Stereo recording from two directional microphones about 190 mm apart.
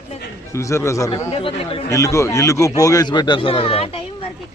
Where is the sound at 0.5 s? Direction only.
15° left (ahead or behind).